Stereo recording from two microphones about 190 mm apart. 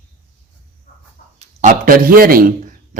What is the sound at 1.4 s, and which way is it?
A man's voice, 45° right (ahead or behind).